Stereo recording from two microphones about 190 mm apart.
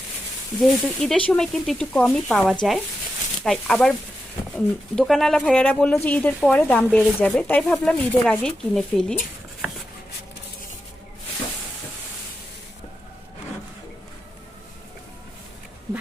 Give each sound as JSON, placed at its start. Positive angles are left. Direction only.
{"t": 0.6, "sound": "speech", "side_deg": 0}
{"t": 6.8, "sound": "speech", "side_deg": -5}
{"t": 7.2, "sound": "speech", "side_deg": 10}